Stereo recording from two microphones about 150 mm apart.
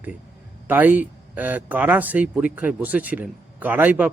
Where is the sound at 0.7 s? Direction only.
10° right (ahead or behind).